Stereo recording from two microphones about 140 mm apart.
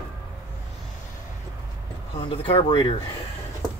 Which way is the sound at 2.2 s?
40° left (ahead or behind).